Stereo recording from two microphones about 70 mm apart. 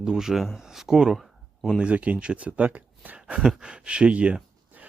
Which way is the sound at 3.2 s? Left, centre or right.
Centre.